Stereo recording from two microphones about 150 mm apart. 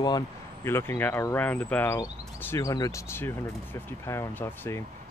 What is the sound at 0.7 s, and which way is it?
Speech, 15° left (ahead or behind).